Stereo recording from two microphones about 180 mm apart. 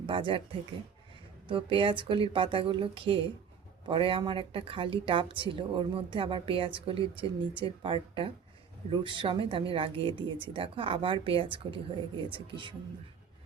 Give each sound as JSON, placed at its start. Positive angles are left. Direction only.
{"t": 0.0, "sound": "speech", "side_deg": -30}
{"t": 1.5, "sound": "a woman's voice", "side_deg": -30}